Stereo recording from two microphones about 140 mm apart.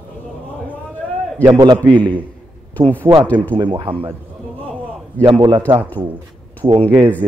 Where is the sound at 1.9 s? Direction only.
35° right (ahead or behind).